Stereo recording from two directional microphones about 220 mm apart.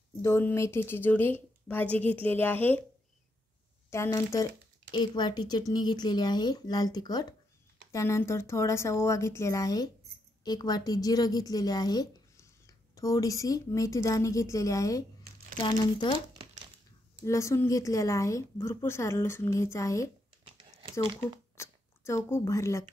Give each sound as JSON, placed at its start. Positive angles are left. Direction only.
{"t": 0.2, "sound": "a woman's voice", "side_deg": 10}
{"t": 3.9, "sound": "a woman's voice", "side_deg": 15}
{"t": 17.2, "sound": "a woman's voice", "side_deg": 15}
{"t": 21.5, "sound": "speech", "side_deg": 10}